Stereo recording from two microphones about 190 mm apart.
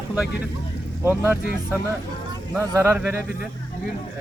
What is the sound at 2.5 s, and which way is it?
Speech, 15° right (ahead or behind).